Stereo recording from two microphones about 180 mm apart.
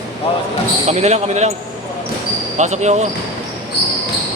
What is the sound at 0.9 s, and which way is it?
Speech, 35° right (ahead or behind).